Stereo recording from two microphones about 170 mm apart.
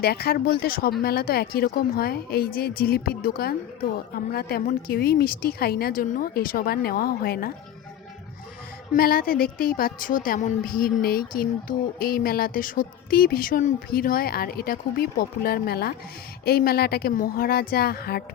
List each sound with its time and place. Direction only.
0.0 s a woman's voice: 65° left (ahead or behind)
8.9 s a woman's voice: 60° left (ahead or behind)